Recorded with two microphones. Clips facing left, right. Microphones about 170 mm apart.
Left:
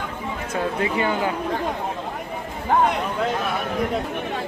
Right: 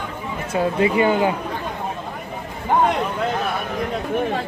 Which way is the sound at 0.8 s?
15° right (ahead or behind).